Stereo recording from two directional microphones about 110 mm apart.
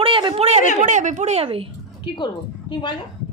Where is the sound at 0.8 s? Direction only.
90° right; by 1.7 s 60° right (ahead or behind).